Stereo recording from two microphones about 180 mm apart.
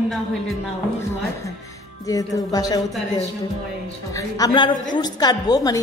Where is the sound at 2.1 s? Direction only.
20° left (ahead or behind).